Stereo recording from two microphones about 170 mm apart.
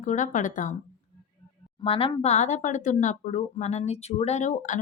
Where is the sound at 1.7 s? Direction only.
30° left (ahead or behind).